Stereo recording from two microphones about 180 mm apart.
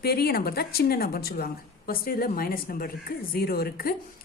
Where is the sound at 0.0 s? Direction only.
60° left (ahead or behind).